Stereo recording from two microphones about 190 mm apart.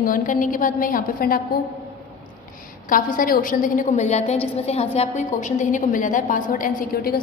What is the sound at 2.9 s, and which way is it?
A woman's voice, 45° left (ahead or behind).